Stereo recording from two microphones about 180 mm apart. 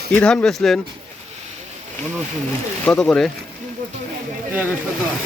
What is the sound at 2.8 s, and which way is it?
Speech, 5° left (ahead or behind).